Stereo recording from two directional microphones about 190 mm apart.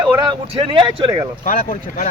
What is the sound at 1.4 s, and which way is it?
Speech, 40° left (ahead or behind).